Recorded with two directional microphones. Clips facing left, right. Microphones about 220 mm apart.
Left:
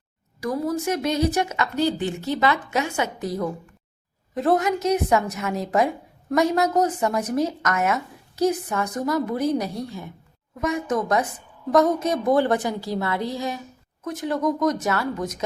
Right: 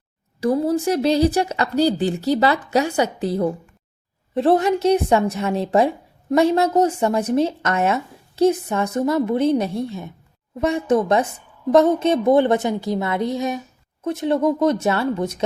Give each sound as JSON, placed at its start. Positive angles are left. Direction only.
{"t": 0.3, "sound": "a woman's voice", "side_deg": -30}